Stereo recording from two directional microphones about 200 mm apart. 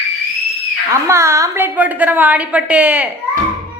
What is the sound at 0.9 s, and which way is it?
A woman's voice, 15° right (ahead or behind).